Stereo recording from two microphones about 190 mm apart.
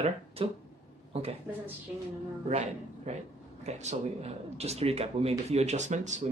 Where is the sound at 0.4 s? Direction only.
30° right (ahead or behind).